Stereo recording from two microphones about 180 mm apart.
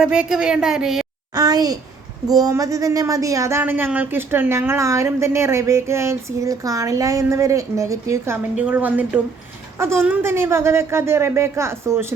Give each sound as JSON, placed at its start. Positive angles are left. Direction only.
{"t": 0.0, "sound": "a woman's voice", "side_deg": -5}
{"t": 1.4, "sound": "a child's voice", "side_deg": -20}